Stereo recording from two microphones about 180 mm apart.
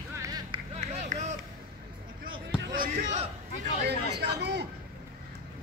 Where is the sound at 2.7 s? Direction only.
45° right (ahead or behind).